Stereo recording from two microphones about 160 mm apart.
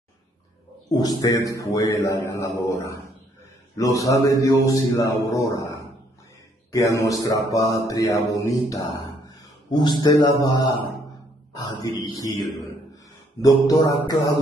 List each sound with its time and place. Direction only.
0.9 s a man's voice: 20° left (ahead or behind)
13.7 s a man's voice: 20° left (ahead or behind)